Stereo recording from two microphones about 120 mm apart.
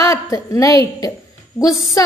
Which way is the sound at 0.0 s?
25° left (ahead or behind).